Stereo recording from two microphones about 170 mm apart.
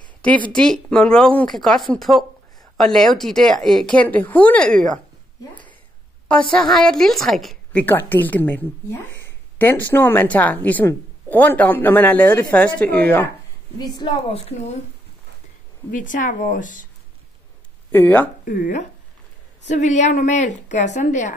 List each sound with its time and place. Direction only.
0.2 s a woman's voice: 10° left (ahead or behind)
7.8 s a woman's voice: 10° left (ahead or behind)
13.7 s a woman's voice: 25° left (ahead or behind)
15.9 s a woman's voice: 50° left (ahead or behind)
17.9 s a woman's voice: 10° left (ahead or behind)
18.4 s a woman's voice: 55° left (ahead or behind)